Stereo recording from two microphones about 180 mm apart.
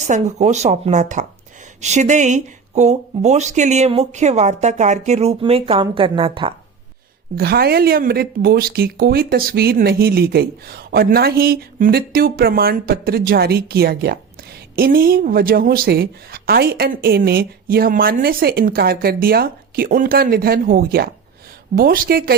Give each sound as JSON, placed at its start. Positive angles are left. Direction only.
{"t": 0.1, "sound": "speech", "side_deg": -40}
{"t": 7.3, "sound": "speech", "side_deg": -60}